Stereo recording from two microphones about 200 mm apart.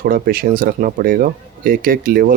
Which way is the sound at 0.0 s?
45° right (ahead or behind).